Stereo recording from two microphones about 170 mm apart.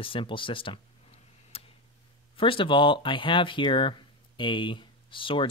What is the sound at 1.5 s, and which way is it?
Tick, 35° left (ahead or behind).